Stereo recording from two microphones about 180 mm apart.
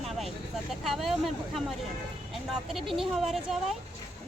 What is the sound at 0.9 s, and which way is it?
Speech, centre (ahead or behind).